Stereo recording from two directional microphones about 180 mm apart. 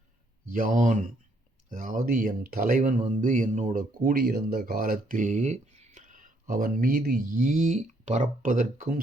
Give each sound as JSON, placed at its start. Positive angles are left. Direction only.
{"t": 0.5, "sound": "speech", "side_deg": -50}